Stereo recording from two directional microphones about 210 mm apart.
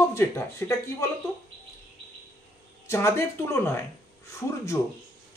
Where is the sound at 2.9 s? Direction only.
15° left (ahead or behind).